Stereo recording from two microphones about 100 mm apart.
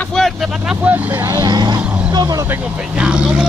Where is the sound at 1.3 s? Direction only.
45° right (ahead or behind).